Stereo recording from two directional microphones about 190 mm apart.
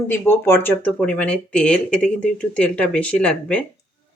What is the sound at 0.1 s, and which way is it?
Speech, 10° left (ahead or behind).